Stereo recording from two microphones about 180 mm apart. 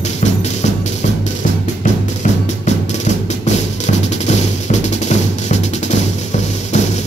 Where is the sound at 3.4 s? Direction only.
40° left (ahead or behind).